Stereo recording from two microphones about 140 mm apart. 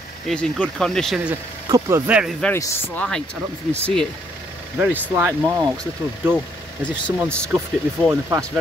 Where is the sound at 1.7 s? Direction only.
25° right (ahead or behind).